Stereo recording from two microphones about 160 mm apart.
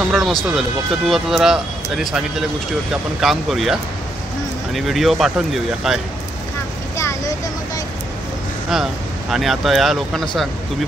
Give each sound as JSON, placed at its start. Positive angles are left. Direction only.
{"t": 0.0, "sound": "speech", "side_deg": 0}
{"t": 7.0, "sound": "vehicle", "side_deg": 20}
{"t": 9.3, "sound": "speech", "side_deg": 0}